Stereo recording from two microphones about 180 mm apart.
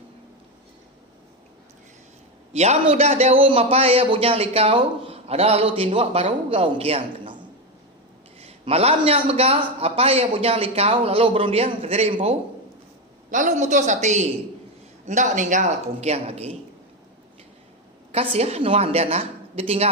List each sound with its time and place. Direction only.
2.5 s a man's voice: 35° right (ahead or behind)
8.4 s speech: 35° right (ahead or behind)
18.1 s speech: 35° right (ahead or behind)